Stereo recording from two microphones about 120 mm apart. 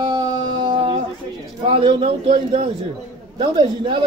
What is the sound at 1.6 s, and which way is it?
Speech, 55° right (ahead or behind).